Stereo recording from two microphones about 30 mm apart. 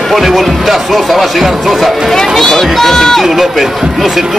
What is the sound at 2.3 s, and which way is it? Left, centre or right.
Speech, centre.